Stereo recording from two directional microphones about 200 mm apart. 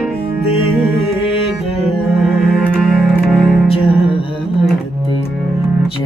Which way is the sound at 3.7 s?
30° left (ahead or behind).